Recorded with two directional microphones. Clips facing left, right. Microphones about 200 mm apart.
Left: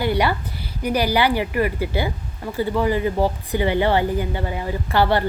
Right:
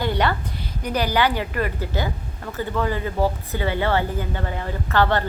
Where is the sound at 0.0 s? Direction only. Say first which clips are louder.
Left 2 dB; 10° left (ahead or behind).